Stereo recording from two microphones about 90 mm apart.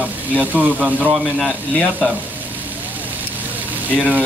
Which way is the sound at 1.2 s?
5° left (ahead or behind).